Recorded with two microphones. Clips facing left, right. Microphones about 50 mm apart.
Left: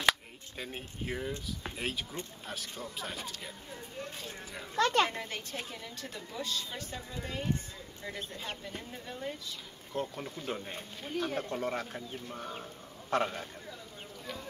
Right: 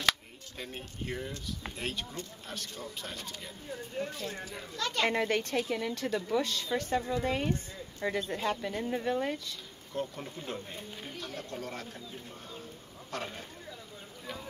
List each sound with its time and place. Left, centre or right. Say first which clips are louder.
0.6 s speech: even; centre
4.7 s speech: left 7 dB; left
5.0 s speech: right 6 dB; right
7.1 s speech: right 6 dB; right
9.9 s speech: even; centre
11.1 s speech: left 8 dB; left
12.4 s speech: left 5 dB; left
13.1 s speech: left 8 dB; left
14.2 s a sound: right 1 dB; centre